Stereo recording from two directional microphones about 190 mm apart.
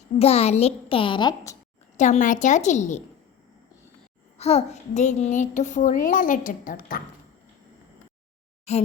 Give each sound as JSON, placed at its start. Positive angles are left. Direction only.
{"t": 0.2, "sound": "a woman's voice", "side_deg": 35}
{"t": 2.0, "sound": "a child's voice", "side_deg": 40}
{"t": 4.4, "sound": "a child's voice", "side_deg": 35}
{"t": 8.7, "sound": "a child's voice", "side_deg": 35}